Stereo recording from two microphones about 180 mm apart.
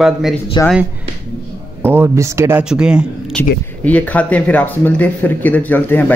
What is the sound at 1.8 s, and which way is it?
Speech, 15° right (ahead or behind).